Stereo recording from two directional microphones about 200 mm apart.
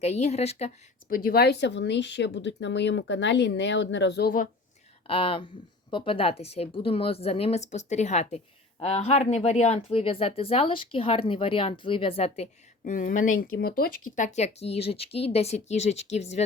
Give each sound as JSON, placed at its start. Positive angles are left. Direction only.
{"t": 0.0, "sound": "a woman's voice", "side_deg": 35}
{"t": 1.1, "sound": "speech", "side_deg": 50}
{"t": 5.0, "sound": "a woman's voice", "side_deg": 25}
{"t": 14.2, "sound": "a woman's voice", "side_deg": 35}